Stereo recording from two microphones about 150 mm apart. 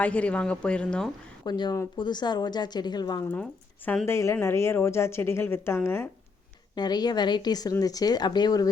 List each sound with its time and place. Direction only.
0.0 s a woman's voice: 10° left (ahead or behind)
1.5 s a woman's voice: 30° left (ahead or behind)
6.7 s speech: 25° left (ahead or behind)